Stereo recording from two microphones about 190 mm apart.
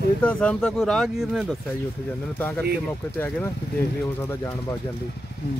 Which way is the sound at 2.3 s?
10° left (ahead or behind).